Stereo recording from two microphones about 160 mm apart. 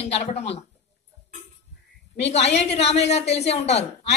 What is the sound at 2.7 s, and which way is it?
A man's voice, 40° left (ahead or behind).